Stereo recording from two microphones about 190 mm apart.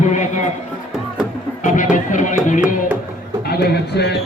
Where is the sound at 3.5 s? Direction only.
60° left (ahead or behind).